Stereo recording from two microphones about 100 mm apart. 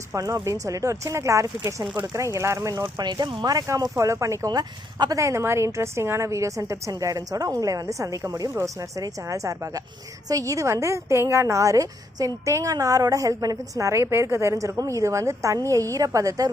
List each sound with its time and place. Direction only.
0.1 s a woman's voice: 35° right (ahead or behind)
3.0 s speech: 45° right (ahead or behind)
3.7 s a woman's voice: 35° right (ahead or behind)